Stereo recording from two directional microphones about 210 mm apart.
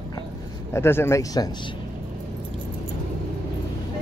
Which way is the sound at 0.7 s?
10° left (ahead or behind).